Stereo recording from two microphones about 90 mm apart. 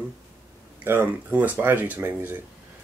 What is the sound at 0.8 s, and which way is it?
Speech, 20° right (ahead or behind).